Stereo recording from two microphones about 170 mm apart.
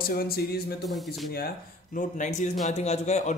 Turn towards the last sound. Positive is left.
turn(degrees=40)  # may be behind; listen again after turning